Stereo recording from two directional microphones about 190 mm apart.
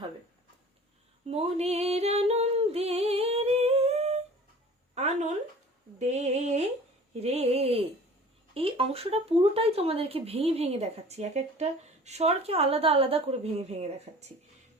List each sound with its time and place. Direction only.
1.3 s singing: 35° right (ahead or behind)
6.0 s a sound: 35° right (ahead or behind)
7.2 s speech: 35° right (ahead or behind)